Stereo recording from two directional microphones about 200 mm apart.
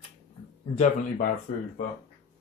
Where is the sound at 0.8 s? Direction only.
45° left (ahead or behind).